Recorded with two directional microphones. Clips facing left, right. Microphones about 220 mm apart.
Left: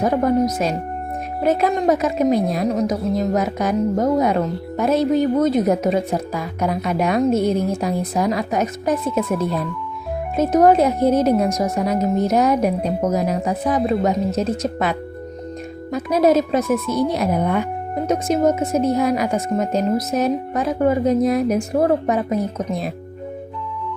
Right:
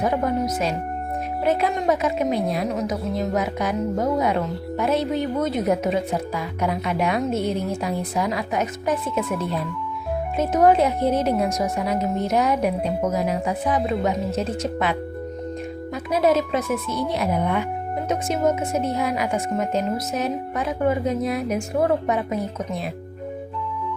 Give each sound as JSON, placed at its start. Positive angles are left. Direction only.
{"t": 0.0, "sound": "a woman's voice", "side_deg": 40}
{"t": 10.3, "sound": "a woman's voice", "side_deg": 40}